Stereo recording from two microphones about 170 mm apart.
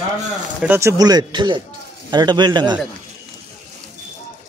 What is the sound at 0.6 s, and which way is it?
Speech, 15° right (ahead or behind).